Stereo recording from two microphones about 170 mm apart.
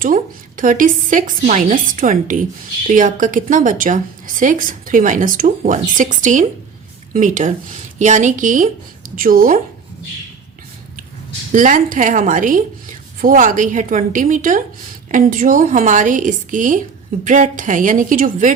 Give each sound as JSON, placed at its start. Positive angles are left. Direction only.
{"t": 0.0, "sound": "a woman's voice", "side_deg": -50}
{"t": 11.5, "sound": "a woman's voice", "side_deg": -50}